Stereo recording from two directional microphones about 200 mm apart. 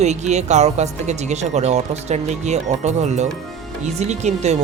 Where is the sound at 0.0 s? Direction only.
35° right (ahead or behind).